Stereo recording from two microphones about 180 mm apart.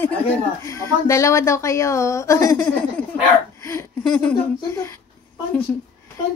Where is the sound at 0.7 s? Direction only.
15° left (ahead or behind).